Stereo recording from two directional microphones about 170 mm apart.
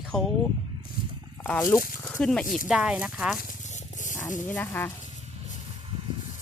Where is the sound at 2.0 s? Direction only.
10° left (ahead or behind).